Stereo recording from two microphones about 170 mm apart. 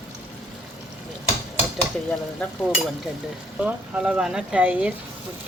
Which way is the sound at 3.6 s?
5° right (ahead or behind).